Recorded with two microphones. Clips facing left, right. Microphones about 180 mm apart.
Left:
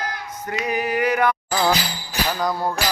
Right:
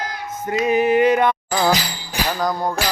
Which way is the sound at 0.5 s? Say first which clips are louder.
Right 7 dB; 25° right (ahead or behind).